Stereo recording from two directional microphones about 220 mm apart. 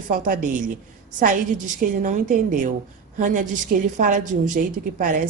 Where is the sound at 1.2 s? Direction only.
35° right (ahead or behind).